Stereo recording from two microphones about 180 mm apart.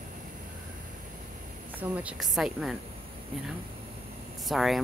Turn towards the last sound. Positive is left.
turn(degrees=0)  # may be behind; listen again after turning